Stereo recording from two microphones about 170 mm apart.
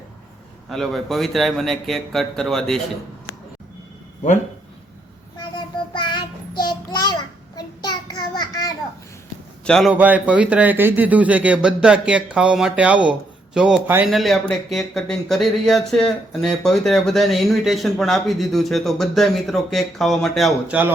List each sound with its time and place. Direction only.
0.7 s speech: centre (ahead or behind)
5.4 s child singing: 25° left (ahead or behind)
8.4 s a sound: 20° left (ahead or behind)
9.6 s speech: 5° left (ahead or behind)
9.9 s a man's voice: 10° right (ahead or behind)